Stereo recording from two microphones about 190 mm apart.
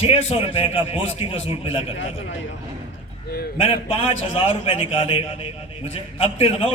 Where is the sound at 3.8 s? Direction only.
30° left (ahead or behind).